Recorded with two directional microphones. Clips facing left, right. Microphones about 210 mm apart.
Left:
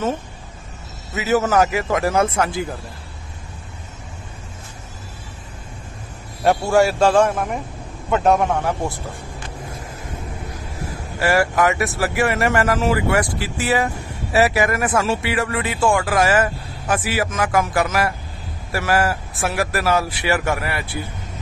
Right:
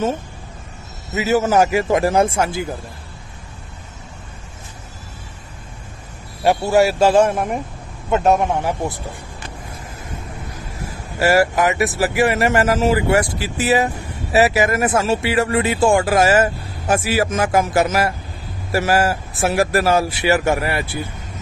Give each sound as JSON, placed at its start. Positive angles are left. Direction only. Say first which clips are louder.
{"t": 1.1, "sound": "speech", "louder": "right 2 dB", "side_deg": -25}
{"t": 6.6, "sound": "speech", "louder": "right 1 dB", "side_deg": -20}
{"t": 6.9, "sound": "speech", "louder": "right 1 dB", "side_deg": -5}
{"t": 7.2, "sound": "speech", "louder": "right 2 dB", "side_deg": -25}
{"t": 11.1, "sound": "speech", "louder": "right 2 dB", "side_deg": -25}